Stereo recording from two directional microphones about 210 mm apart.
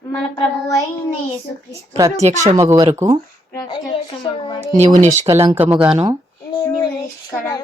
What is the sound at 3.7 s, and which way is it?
Speech, 20° left (ahead or behind).